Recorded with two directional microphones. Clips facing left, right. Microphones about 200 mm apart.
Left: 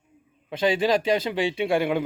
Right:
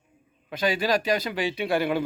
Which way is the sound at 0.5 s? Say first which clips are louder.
Left 3 dB; 25° left (ahead or behind).